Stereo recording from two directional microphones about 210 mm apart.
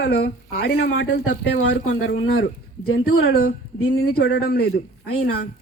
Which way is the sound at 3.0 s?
45° left (ahead or behind).